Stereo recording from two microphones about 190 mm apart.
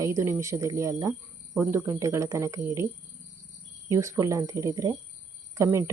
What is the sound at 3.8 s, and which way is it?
Speech, 15° right (ahead or behind).